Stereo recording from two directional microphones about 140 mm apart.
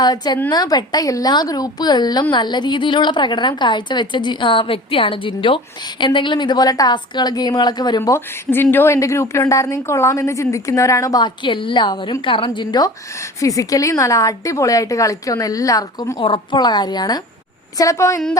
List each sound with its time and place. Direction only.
0.0 s a woman's voice: 30° left (ahead or behind)
8.4 s a woman's voice: 15° left (ahead or behind)